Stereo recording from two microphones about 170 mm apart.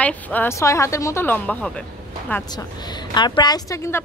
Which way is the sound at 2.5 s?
25° left (ahead or behind).